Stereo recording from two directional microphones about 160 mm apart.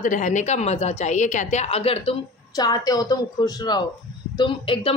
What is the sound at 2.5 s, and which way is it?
A woman's voice, 25° left (ahead or behind).